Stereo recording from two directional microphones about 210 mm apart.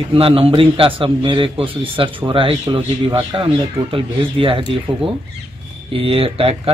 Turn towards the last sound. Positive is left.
turn(degrees=-25)  # may be behind; listen again after turning